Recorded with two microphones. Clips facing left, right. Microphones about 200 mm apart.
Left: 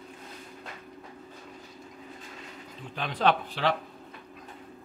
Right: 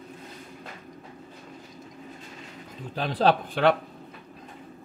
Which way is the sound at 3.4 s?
50° right (ahead or behind).